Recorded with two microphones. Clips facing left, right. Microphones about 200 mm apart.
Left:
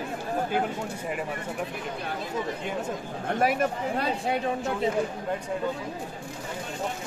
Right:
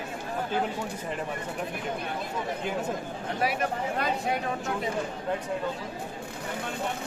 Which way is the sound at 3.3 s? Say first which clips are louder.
Left 4 dB; 50° left (ahead or behind).